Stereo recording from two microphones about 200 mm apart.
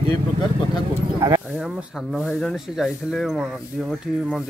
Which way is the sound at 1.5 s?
5° right (ahead or behind).